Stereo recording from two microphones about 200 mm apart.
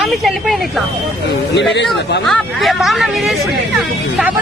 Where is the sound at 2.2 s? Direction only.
Centre (ahead or behind).